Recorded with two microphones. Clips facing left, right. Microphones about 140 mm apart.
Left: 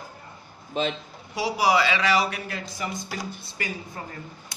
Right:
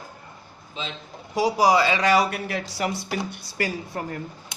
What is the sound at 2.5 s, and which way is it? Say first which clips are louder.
A woman's voice: right 5 dB; 70° right (ahead or behind).